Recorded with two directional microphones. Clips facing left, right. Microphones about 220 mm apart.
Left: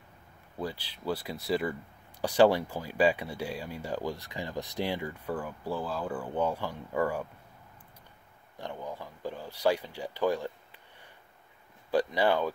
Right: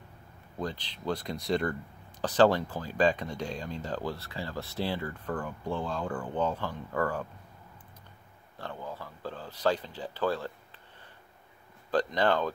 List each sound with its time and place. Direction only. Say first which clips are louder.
0.6 s speech: right 1 dB; 10° left (ahead or behind)
8.5 s speech: left 1 dB; 15° left (ahead or behind)
11.9 s speech: left 1 dB; 10° left (ahead or behind)